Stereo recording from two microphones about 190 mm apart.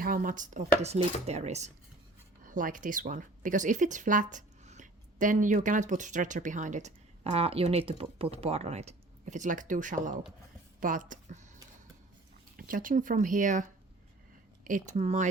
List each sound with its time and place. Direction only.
0.0 s speech: 50° right (ahead or behind)
10.8 s a sound: 45° right (ahead or behind)
12.5 s speech: 45° right (ahead or behind)